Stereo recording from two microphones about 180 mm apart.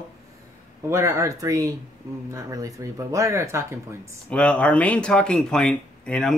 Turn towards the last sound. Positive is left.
turn(degrees=5)  # may be behind; listen again after turning